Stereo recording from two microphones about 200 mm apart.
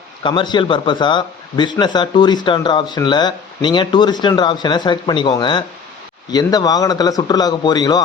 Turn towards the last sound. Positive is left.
turn(degrees=20)  # may be behind; listen again after turning